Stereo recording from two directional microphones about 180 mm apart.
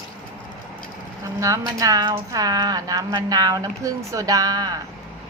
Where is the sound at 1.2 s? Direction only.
20° right (ahead or behind).